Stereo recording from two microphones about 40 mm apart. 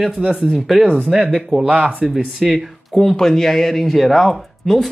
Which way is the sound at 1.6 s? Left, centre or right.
Right.